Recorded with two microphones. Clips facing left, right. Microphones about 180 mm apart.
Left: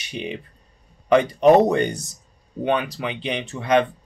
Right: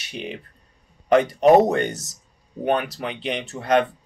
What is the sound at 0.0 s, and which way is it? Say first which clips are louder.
Speech: left 2 dB; centre (ahead or behind).